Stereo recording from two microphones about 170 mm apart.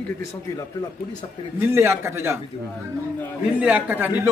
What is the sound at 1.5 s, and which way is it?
Speech, 15° right (ahead or behind).